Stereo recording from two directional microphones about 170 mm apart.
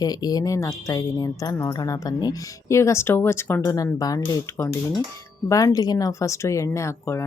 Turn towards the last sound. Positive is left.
turn(degrees=15)  # may be behind; listen again after turning